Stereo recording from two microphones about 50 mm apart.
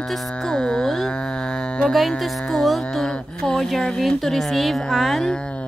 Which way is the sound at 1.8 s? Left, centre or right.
Centre.